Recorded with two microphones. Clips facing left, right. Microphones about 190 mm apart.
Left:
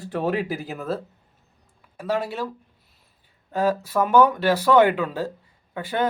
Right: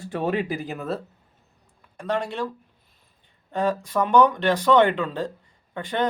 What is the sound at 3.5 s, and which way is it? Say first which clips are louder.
A man's voice: left 2 dB; 5° left (ahead or behind).